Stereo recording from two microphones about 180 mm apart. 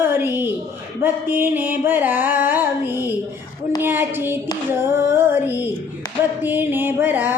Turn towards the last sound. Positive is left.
turn(degrees=-10)  # may be behind; listen again after turning